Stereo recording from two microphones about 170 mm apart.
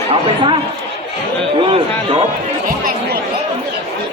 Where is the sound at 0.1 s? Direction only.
30° right (ahead or behind).